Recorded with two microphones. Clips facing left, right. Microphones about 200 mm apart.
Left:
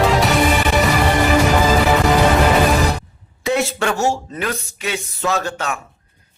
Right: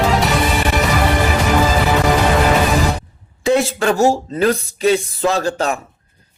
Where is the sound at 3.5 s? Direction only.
35° right (ahead or behind).